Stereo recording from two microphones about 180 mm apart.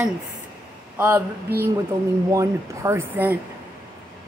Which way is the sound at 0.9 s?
10° right (ahead or behind).